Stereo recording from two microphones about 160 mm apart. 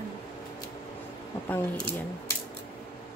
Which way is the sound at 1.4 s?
10° left (ahead or behind).